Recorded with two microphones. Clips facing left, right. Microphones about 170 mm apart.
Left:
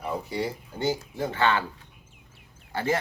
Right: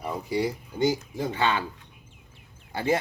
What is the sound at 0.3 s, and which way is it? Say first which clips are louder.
Speech: right 3 dB; 15° right (ahead or behind).